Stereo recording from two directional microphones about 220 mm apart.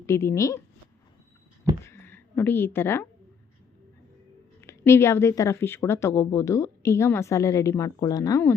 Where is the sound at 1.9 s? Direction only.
10° left (ahead or behind).